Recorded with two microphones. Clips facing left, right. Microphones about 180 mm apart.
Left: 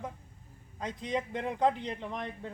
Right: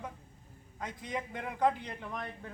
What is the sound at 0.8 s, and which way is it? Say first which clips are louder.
A man's voice: left 5 dB; 20° left (ahead or behind).